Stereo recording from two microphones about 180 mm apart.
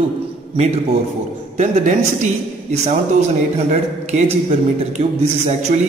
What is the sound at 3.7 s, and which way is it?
A man's voice, 40° right (ahead or behind).